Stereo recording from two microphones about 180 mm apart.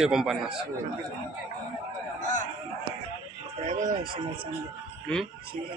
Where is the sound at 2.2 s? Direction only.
45° left (ahead or behind).